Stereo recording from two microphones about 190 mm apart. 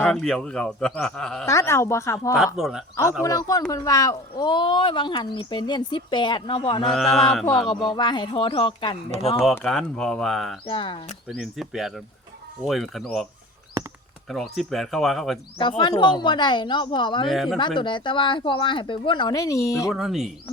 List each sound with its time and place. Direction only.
0.0 s speech: 5° left (ahead or behind)
1.5 s a woman's voice: 15° left (ahead or behind)
2.6 s speech: centre (ahead or behind)
3.2 s speech: 20° left (ahead or behind)
6.9 s speech: centre (ahead or behind)
7.7 s speech: 25° left (ahead or behind)
9.6 s speech: centre (ahead or behind)
10.7 s speech: 25° left (ahead or behind)
11.3 s speech: centre (ahead or behind)
14.3 s speech: centre (ahead or behind)
15.8 s speech: 25° left (ahead or behind)
17.2 s speech: centre (ahead or behind)
17.7 s speech: 25° left (ahead or behind)
19.9 s speech: centre (ahead or behind)